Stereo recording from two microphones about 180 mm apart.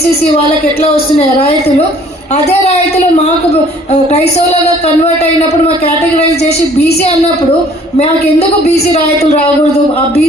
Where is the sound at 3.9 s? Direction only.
35° left (ahead or behind).